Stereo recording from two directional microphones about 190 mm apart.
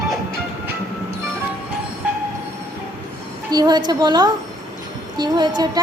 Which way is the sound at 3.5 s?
20° right (ahead or behind).